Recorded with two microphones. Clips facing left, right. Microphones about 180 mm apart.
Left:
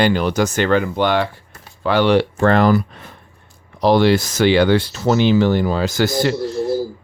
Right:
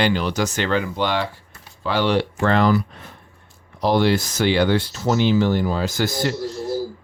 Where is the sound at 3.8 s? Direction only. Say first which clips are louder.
Left 4 dB; 85° left; by 6.6 s 65° left (ahead or behind).